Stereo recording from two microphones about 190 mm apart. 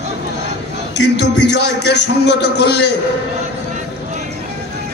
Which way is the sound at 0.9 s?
65° left (ahead or behind).